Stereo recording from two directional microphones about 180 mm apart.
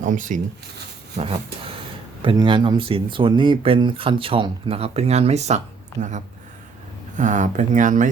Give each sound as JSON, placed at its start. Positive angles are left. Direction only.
{"t": 0.0, "sound": "speech", "side_deg": -45}
{"t": 1.2, "sound": "a sound", "side_deg": -35}
{"t": 2.2, "sound": "speech", "side_deg": -25}